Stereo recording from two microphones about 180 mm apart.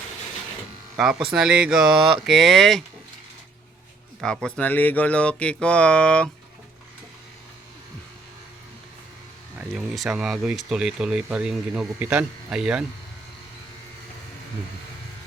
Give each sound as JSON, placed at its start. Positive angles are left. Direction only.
{"t": 1.3, "sound": "speech", "side_deg": -5}
{"t": 4.2, "sound": "speech", "side_deg": 5}
{"t": 9.6, "sound": "speech", "side_deg": -5}